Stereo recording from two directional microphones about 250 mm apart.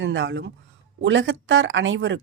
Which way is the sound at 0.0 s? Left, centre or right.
Right.